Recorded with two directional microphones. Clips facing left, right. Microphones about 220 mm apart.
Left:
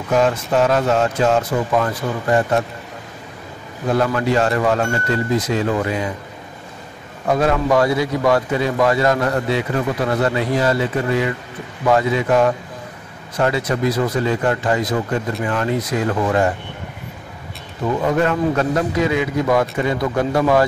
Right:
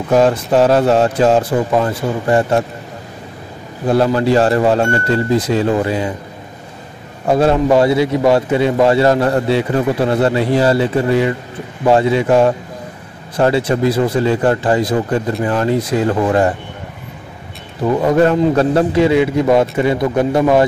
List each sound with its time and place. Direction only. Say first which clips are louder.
0.1 s speech: right 5 dB; 35° right (ahead or behind)
3.8 s speech: right 5 dB; 30° right (ahead or behind)
7.2 s a man's voice: right 5 dB; 30° right (ahead or behind)
18.0 s a man's voice: right 6 dB; 35° right (ahead or behind)